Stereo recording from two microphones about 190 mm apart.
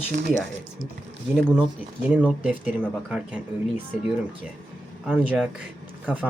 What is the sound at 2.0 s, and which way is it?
Speech, 5° right (ahead or behind).